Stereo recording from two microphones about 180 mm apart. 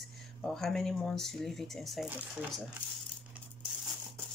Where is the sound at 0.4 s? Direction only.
5° left (ahead or behind).